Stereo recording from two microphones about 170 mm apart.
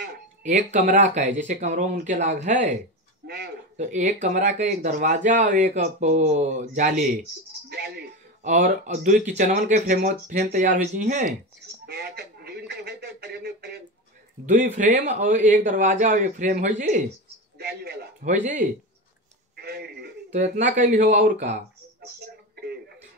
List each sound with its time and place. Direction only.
0.4 s speech: 45° right (ahead or behind)
3.3 s a man's voice: 70° right (ahead or behind)
3.7 s speech: 45° right (ahead or behind)
7.7 s speech: 70° right (ahead or behind)
8.5 s speech: 45° right (ahead or behind)
11.8 s speech: 70° right (ahead or behind)
14.4 s speech: 50° right (ahead or behind)
17.6 s a man's voice: 70° right (ahead or behind)
18.2 s speech: 45° right (ahead or behind)
19.5 s a sound: 70° right (ahead or behind)
20.5 s speech: 50° right (ahead or behind)